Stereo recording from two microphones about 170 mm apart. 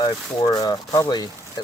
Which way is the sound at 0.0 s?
20° left (ahead or behind).